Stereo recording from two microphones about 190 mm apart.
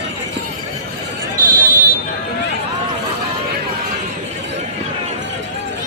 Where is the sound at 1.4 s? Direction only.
45° right (ahead or behind).